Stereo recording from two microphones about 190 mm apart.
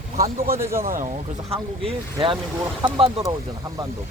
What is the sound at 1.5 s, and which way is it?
Speech, 30° right (ahead or behind).